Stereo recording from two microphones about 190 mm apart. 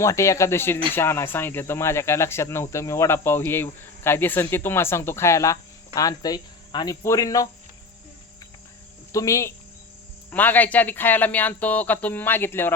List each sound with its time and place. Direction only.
0.0 s speech: 15° left (ahead or behind)
9.1 s speech: 15° left (ahead or behind)